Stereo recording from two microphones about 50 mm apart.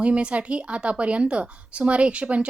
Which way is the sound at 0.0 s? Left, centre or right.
Right.